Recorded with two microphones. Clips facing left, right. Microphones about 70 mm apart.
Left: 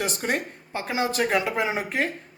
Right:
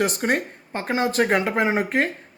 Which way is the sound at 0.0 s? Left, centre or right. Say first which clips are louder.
Right 5 dB; right.